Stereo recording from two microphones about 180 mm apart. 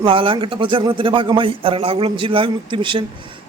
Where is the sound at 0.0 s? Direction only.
30° right (ahead or behind).